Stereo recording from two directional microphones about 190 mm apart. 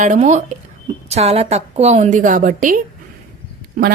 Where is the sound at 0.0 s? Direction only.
40° right (ahead or behind).